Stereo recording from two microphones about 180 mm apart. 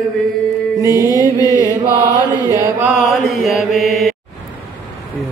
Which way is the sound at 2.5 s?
10° right (ahead or behind).